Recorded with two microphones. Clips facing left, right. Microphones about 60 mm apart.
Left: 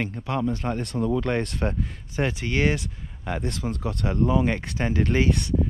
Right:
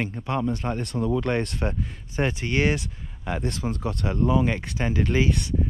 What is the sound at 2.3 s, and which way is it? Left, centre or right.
Speech, right.